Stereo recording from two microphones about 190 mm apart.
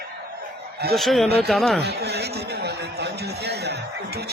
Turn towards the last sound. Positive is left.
turn(degrees=-60)  # may be behind; listen again after turning